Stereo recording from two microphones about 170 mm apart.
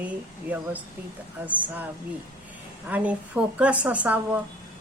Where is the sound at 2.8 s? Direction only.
10° right (ahead or behind).